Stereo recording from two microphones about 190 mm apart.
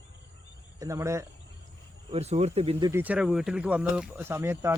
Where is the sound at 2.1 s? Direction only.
35° right (ahead or behind).